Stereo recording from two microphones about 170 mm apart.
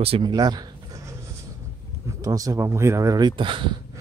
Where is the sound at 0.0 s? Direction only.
30° right (ahead or behind).